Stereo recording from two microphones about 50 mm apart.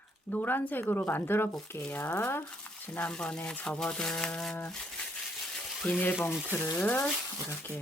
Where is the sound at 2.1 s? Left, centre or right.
Left.